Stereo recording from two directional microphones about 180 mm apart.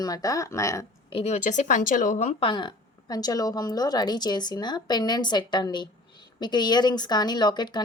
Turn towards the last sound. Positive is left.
turn(degrees=25)  # may be behind; listen again after turning